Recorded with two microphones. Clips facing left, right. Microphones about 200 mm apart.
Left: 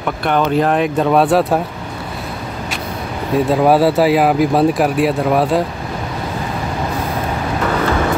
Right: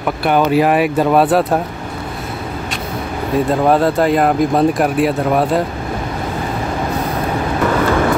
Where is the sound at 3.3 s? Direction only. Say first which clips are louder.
Left 1 dB; 5° left (ahead or behind).